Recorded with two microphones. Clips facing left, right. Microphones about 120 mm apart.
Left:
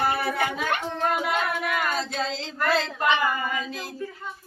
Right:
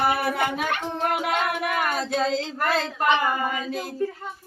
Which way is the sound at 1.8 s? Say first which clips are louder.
Right 3 dB; 55° right (ahead or behind).